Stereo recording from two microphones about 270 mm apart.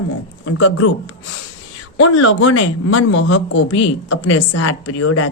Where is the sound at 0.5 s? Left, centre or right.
Left.